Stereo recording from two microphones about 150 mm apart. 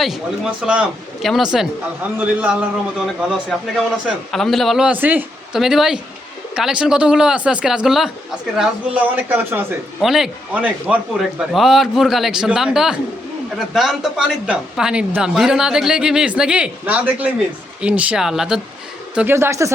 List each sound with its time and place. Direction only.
0.6 s a woman's voice: 5° right (ahead or behind)
10.0 s a woman's voice: centre (ahead or behind); by 19.7 s 20° right (ahead or behind)